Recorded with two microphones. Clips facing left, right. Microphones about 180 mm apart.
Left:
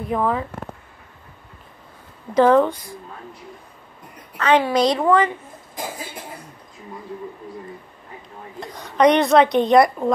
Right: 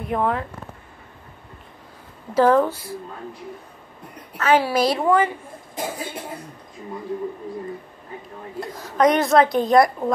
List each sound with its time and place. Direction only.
0.1 s a woman's voice: centre (ahead or behind)
2.3 s a woman's voice: 5° right (ahead or behind)
4.4 s a woman's voice: 5° right (ahead or behind)
8.5 s a woman's voice: centre (ahead or behind)